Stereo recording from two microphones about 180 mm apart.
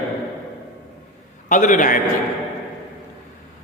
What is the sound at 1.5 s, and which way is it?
Speech, 45° left (ahead or behind).